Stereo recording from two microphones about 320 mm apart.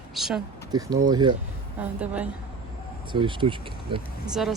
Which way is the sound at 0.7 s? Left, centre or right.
Centre.